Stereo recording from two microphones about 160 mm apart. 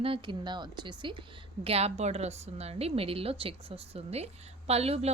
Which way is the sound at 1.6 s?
40° right (ahead or behind).